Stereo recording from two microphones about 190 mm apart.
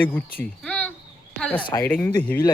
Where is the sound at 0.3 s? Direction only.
5° left (ahead or behind).